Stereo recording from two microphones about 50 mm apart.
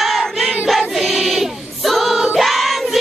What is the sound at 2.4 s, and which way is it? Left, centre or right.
Choir, centre.